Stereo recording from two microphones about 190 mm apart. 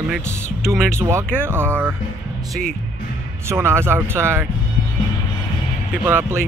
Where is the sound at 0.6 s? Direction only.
5° left (ahead or behind).